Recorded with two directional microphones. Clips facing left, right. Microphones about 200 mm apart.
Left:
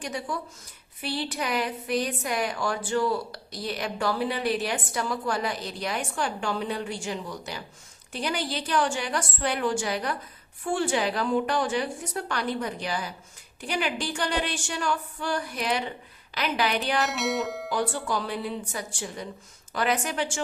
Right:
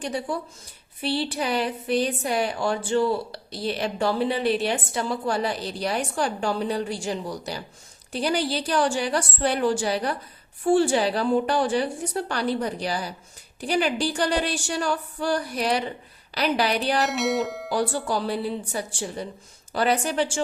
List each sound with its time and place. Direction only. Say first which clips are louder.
0.0 s a woman's voice: right 4 dB; 30° right (ahead or behind)
17.1 s speech: right 4 dB; centre (ahead or behind)
17.7 s a woman's voice: right 3 dB; 35° right (ahead or behind)